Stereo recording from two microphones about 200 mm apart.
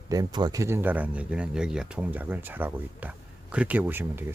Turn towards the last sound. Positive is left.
turn(degrees=-10)  # may be behind; listen again after turning